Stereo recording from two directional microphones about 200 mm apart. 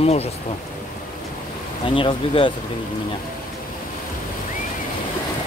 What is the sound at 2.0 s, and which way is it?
Speech, 25° left (ahead or behind).